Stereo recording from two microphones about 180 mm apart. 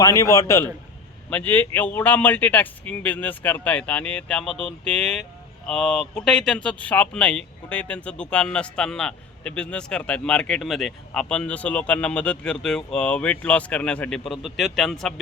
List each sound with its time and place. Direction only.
0.0 s speech: 15° left (ahead or behind); by 15.1 s centre (ahead or behind)